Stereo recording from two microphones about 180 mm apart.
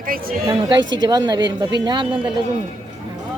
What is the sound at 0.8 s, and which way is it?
Speech, 90° right.